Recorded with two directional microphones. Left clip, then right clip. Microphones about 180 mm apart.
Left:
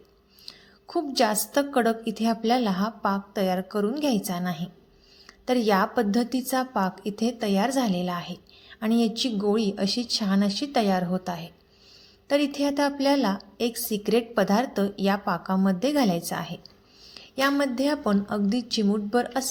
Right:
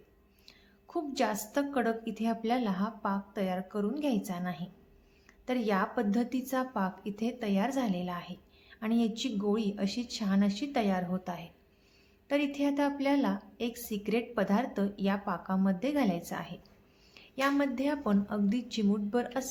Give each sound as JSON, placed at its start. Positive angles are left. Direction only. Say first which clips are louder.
{"t": 0.4, "sound": "a woman's voice", "louder": "left 11 dB", "side_deg": 25}